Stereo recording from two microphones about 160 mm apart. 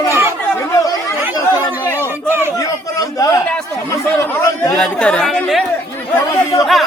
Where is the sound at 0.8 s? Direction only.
20° left (ahead or behind).